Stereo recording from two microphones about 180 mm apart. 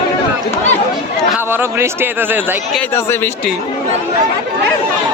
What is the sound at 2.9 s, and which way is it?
Speech, 15° left (ahead or behind).